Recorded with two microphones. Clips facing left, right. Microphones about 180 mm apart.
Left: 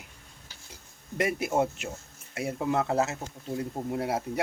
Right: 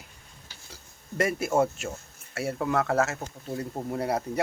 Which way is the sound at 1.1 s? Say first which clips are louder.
Right 2 dB; 15° left (ahead or behind).